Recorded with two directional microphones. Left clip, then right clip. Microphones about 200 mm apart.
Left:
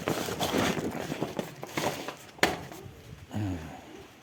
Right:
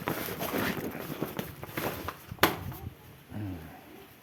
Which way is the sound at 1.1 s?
5° left (ahead or behind).